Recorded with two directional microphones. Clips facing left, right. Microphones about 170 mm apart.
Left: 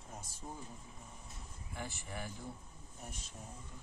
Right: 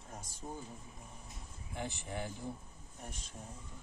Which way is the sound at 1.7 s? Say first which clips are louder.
Right 4 dB; 20° right (ahead or behind).